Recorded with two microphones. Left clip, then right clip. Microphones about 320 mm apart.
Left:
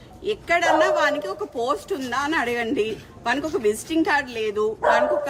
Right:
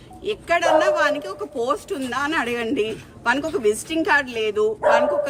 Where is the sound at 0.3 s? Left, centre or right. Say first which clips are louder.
Right 1 dB; centre.